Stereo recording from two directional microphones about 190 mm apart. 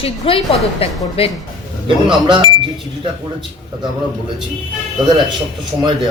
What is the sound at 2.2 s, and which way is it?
Speech, 25° right (ahead or behind).